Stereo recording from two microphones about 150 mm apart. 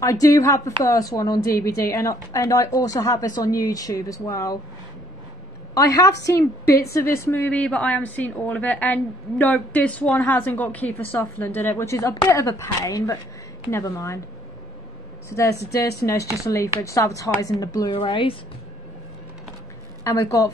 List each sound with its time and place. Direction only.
0.0 s speech: 20° left (ahead or behind)
5.8 s a woman's voice: 20° left (ahead or behind)
15.2 s speech: 20° left (ahead or behind)
17.9 s speech: 35° left (ahead or behind)
20.0 s speech: 20° left (ahead or behind)